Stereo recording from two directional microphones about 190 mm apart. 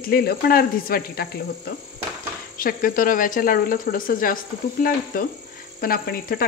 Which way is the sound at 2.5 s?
45° left (ahead or behind).